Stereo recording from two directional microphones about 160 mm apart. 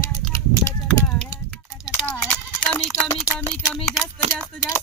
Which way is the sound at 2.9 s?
5° right (ahead or behind).